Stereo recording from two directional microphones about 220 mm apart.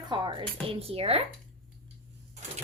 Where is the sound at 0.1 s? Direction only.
20° right (ahead or behind).